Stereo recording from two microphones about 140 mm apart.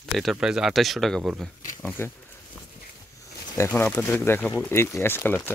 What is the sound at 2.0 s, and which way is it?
Speech, 15° left (ahead or behind).